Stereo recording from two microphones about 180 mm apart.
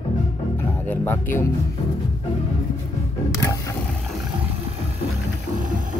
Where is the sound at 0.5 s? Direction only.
10° left (ahead or behind).